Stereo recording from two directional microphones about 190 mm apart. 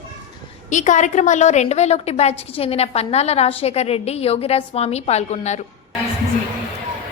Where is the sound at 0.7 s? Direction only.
40° left (ahead or behind).